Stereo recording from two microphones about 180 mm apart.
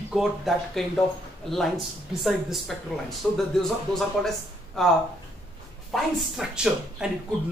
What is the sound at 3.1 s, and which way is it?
Speech, centre (ahead or behind).